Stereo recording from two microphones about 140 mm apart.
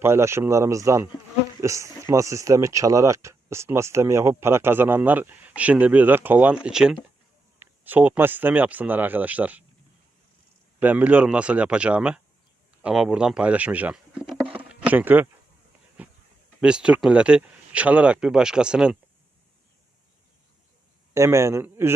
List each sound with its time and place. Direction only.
0.0 s speech: 20° right (ahead or behind)
10.8 s speech: 10° right (ahead or behind)
14.5 s chop: 10° right (ahead or behind)
16.0 s a sound: 10° right (ahead or behind)
16.6 s speech: 5° right (ahead or behind)
21.1 s speech: 20° right (ahead or behind)